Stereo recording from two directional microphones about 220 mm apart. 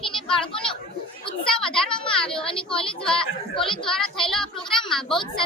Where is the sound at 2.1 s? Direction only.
5° left (ahead or behind).